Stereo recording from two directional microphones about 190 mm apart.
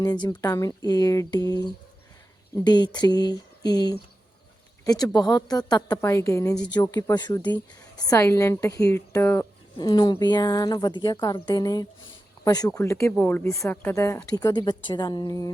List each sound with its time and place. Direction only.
0.0 s a woman's voice: 20° left (ahead or behind)
2.6 s a woman's voice: 25° left (ahead or behind)